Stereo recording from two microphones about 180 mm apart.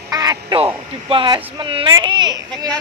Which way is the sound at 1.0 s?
30° right (ahead or behind).